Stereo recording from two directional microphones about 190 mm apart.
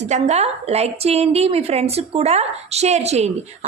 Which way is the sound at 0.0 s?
35° right (ahead or behind).